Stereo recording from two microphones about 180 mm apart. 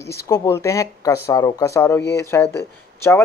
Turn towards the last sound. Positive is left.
turn(degrees=15)  # may be behind; listen again after turning